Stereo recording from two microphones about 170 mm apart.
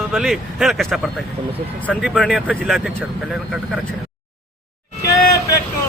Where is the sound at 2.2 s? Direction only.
Centre (ahead or behind).